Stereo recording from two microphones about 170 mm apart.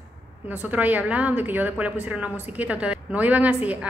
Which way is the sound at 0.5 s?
10° right (ahead or behind).